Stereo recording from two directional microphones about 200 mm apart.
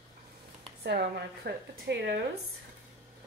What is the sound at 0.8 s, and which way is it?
A woman's voice, 55° right (ahead or behind).